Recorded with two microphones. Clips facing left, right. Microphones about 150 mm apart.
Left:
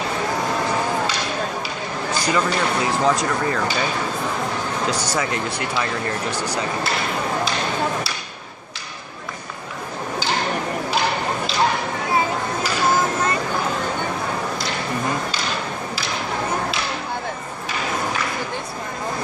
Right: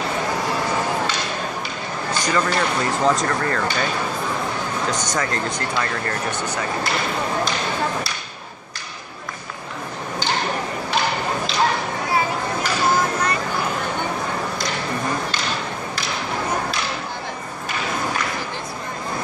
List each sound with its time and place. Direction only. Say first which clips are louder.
2.2 s speech: even; 10° left (ahead or behind)
5.1 s speech: even; 10° left (ahead or behind)
6.3 s speech: left 1 dB; 35° left (ahead or behind)